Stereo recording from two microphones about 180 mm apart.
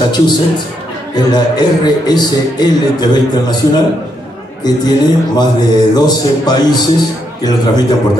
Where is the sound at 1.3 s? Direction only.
25° left (ahead or behind).